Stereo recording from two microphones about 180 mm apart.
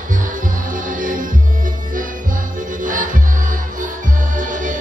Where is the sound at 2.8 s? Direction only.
45° right (ahead or behind).